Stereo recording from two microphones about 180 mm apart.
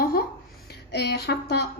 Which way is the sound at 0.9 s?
65° left (ahead or behind).